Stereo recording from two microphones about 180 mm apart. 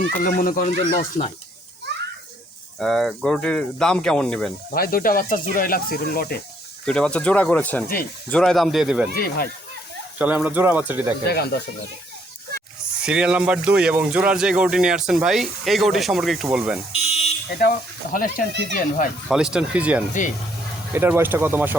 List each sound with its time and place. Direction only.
0.0 s speech: 50° left (ahead or behind)
2.7 s speech: centre (ahead or behind)
4.7 s speech: 55° left (ahead or behind)
6.8 s speech: 5° left (ahead or behind)
9.1 s speech: 60° left (ahead or behind)
10.2 s speech: 10° right (ahead or behind)
11.3 s speech: 65° left (ahead or behind)
13.0 s speech: 5° right (ahead or behind)
16.9 s buzzer: 35° left (ahead or behind)
17.6 s speech: 50° left (ahead or behind)
19.3 s speech: 5° right (ahead or behind)